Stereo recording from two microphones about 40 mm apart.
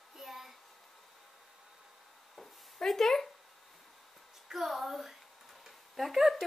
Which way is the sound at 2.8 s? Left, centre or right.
Centre.